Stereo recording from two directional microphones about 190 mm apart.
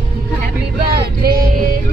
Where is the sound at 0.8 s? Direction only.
55° right (ahead or behind).